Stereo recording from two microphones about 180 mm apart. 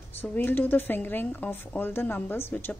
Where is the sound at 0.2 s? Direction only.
10° left (ahead or behind).